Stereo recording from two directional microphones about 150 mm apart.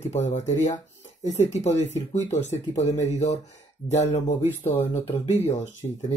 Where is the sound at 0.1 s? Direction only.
50° left (ahead or behind).